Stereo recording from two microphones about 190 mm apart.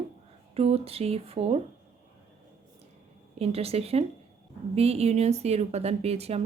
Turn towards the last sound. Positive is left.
turn(degrees=-35)  # may be behind; listen again after turning